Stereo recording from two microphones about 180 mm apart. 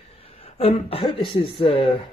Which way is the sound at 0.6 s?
35° left (ahead or behind).